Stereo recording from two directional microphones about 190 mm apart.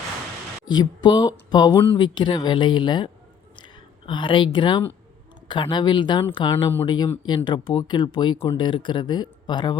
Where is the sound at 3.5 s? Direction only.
25° left (ahead or behind).